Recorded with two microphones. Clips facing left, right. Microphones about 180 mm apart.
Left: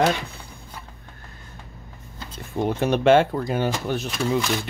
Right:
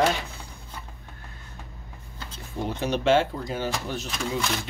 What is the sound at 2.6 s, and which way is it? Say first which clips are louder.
Speech: left 5 dB; 55° left (ahead or behind).